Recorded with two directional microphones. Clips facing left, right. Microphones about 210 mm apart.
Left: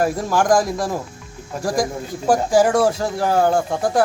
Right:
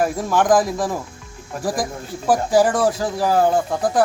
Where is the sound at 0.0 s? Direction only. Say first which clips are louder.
Even; centre (ahead or behind).